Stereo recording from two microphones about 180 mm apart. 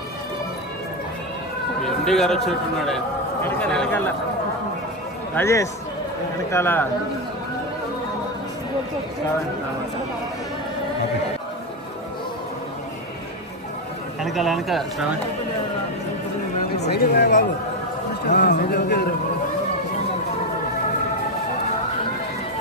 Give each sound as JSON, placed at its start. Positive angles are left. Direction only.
{"t": 2.0, "sound": "a man's voice", "side_deg": 0}
{"t": 5.3, "sound": "speech", "side_deg": 15}
{"t": 14.2, "sound": "a man's voice", "side_deg": 0}
{"t": 16.9, "sound": "speech", "side_deg": 65}